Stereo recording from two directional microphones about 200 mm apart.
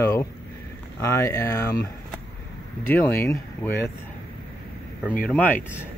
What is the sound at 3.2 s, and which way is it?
Speech, 10° left (ahead or behind).